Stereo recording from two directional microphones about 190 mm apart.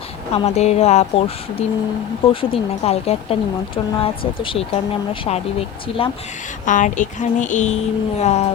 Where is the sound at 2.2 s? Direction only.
30° left (ahead or behind).